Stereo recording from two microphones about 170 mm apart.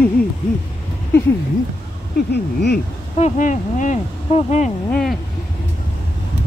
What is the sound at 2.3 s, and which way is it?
Speech, 75° left (ahead or behind).